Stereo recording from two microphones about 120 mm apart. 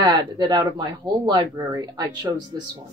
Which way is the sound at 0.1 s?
35° right (ahead or behind).